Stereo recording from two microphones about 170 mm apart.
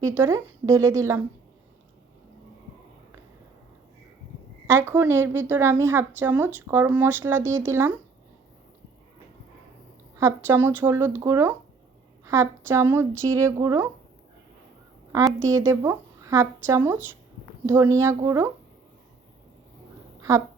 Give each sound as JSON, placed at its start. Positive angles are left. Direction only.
{"t": 0.0, "sound": "a woman's voice", "side_deg": -15}
{"t": 4.6, "sound": "a woman's voice", "side_deg": -15}
{"t": 10.2, "sound": "a woman's voice", "side_deg": -15}
{"t": 15.1, "sound": "a woman's voice", "side_deg": -20}